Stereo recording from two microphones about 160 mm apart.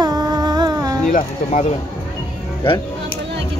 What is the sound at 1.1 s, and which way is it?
Speech, 55° left (ahead or behind).